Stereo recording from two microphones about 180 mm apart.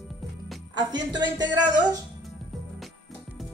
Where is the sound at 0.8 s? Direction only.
25° right (ahead or behind).